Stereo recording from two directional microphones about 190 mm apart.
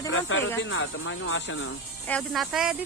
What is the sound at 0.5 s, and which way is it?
Speech, 75° left (ahead or behind).